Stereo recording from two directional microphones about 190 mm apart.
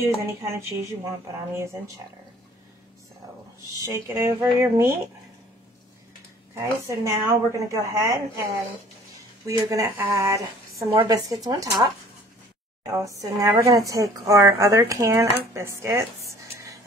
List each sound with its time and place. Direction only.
0.0 s a woman's voice: 15° right (ahead or behind)
4.1 s a woman's voice: 15° right (ahead or behind)
6.5 s a woman's voice: 15° right (ahead or behind)
9.5 s a woman's voice: 15° right (ahead or behind)
10.9 s speech: 25° right (ahead or behind)
13.2 s a woman's voice: 15° right (ahead or behind)